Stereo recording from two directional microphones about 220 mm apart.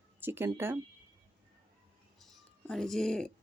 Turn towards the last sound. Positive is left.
turn(degrees=0)  # may be behind; listen again after turning